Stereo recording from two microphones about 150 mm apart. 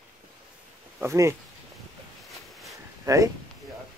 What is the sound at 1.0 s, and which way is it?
Speech, 20° right (ahead or behind).